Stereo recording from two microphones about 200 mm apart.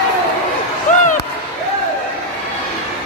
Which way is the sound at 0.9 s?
35° left (ahead or behind).